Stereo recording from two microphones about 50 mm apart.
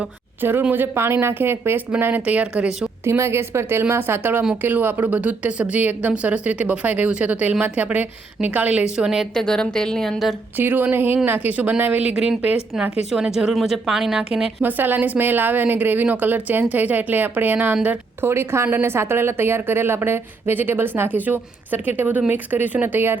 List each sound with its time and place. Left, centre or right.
0.4 s a woman's voice: right
2.2 s speech: right
3.0 s a woman's voice: right
8.8 s speech: centre
9.3 s a woman's voice: centre
10.6 s a woman's voice: right
12.0 s speech: right
13.1 s speech: centre
14.6 s a woman's voice: right
18.2 s a woman's voice: right